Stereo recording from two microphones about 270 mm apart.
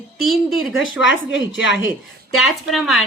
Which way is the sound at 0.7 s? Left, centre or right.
Left.